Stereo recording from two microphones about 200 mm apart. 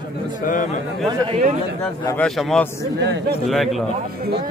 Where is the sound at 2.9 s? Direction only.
60° right (ahead or behind).